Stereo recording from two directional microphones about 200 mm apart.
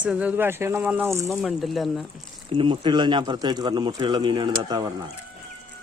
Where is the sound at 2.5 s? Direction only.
25° right (ahead or behind).